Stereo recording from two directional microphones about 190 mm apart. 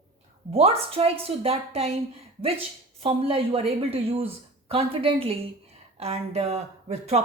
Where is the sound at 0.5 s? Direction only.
30° right (ahead or behind).